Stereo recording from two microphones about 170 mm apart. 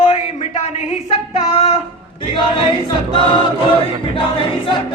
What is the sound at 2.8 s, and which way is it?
Choir, 30° left (ahead or behind).